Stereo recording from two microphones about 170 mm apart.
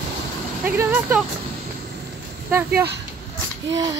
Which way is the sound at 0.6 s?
10° right (ahead or behind).